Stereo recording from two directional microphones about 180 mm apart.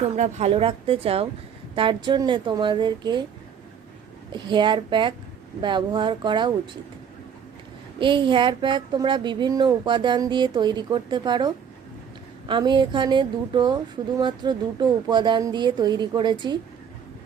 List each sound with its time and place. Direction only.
0.2 s a woman's voice: 35° right (ahead or behind)
4.3 s a woman's voice: 25° right (ahead or behind)
7.9 s a woman's voice: 25° right (ahead or behind)